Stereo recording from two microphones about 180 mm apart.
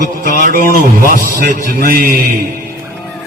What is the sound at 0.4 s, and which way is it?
A man's voice, 50° right (ahead or behind).